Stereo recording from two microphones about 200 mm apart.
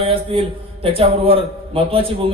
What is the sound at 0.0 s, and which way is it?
A man's voice, 25° right (ahead or behind).